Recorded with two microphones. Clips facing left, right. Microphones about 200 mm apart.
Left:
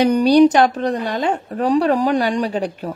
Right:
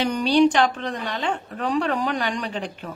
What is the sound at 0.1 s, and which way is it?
Speech, 40° left (ahead or behind).